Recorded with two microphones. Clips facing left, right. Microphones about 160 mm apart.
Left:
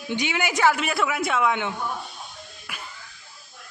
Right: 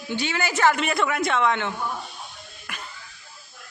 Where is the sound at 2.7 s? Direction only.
5° left (ahead or behind).